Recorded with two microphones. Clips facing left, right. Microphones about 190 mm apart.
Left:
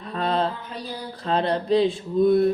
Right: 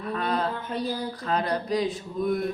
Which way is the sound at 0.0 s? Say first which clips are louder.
Left 3 dB; 30° left (ahead or behind).